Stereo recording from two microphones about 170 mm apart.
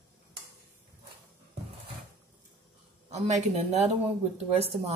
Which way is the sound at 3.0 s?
40° right (ahead or behind).